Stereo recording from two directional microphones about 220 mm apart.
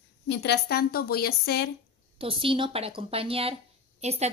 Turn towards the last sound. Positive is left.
turn(degrees=-30)  # may be behind; listen again after turning